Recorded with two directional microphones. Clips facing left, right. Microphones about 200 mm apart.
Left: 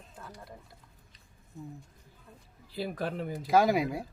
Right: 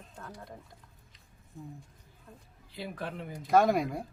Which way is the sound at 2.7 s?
35° left (ahead or behind).